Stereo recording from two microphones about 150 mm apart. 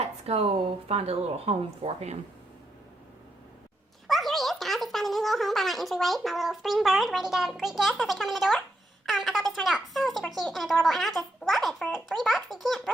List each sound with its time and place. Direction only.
0.0 s a sound: 45° right (ahead or behind)
0.9 s speech: 40° right (ahead or behind)
4.0 s speech: centre (ahead or behind)